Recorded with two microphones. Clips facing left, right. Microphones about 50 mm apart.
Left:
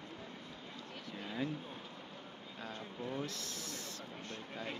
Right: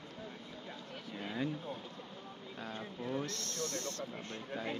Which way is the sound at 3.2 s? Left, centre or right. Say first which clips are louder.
Right 4 dB; centre.